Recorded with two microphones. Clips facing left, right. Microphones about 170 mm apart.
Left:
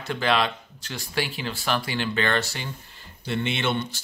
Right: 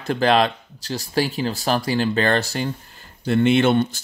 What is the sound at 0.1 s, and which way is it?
Speech, 40° right (ahead or behind).